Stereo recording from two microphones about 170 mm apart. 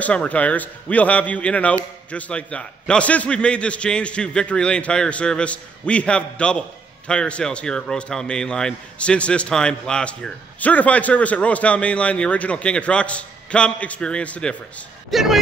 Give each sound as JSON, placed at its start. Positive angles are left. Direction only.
{"t": 0.0, "sound": "a man's voice", "side_deg": 5}